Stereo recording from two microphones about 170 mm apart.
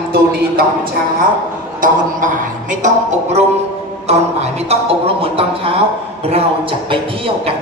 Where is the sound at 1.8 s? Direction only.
50° right (ahead or behind); by 5.8 s 35° right (ahead or behind).